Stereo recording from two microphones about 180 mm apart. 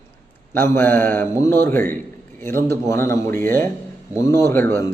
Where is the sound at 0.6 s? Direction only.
10° left (ahead or behind).